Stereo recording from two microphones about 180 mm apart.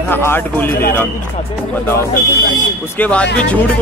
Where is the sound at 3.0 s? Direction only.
5° left (ahead or behind).